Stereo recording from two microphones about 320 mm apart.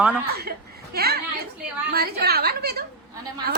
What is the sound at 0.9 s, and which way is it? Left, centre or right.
A woman's voice, right.